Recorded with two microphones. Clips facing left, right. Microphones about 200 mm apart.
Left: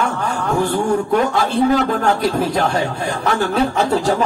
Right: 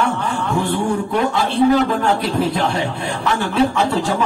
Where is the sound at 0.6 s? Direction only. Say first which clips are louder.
Left 3 dB; 45° left (ahead or behind).